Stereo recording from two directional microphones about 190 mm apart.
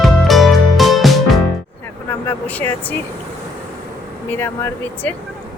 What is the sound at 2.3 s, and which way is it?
Vehicle, 10° left (ahead or behind).